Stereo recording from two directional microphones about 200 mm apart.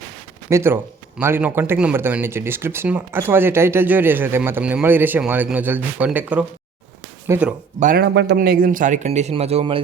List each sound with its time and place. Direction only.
0.5 s speech: 10° right (ahead or behind)
7.8 s speech: 45° right (ahead or behind); by 9.8 s 30° right (ahead or behind)